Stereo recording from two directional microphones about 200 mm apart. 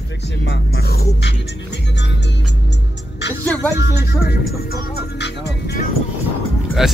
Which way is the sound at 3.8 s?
55° left (ahead or behind).